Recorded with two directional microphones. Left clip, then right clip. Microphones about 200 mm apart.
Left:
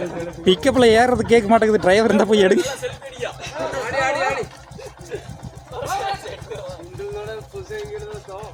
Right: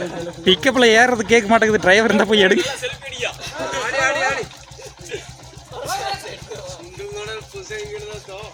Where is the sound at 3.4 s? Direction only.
15° left (ahead or behind).